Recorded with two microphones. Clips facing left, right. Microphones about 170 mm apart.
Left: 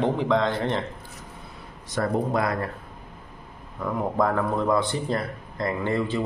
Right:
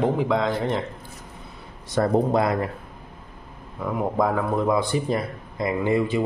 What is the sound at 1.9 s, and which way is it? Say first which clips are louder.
Speech: right 4 dB; 30° right (ahead or behind).